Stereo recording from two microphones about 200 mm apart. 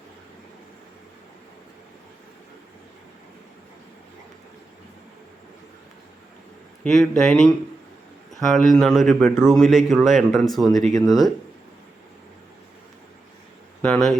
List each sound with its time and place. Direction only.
6.8 s a man's voice: centre (ahead or behind)
13.8 s speech: centre (ahead or behind)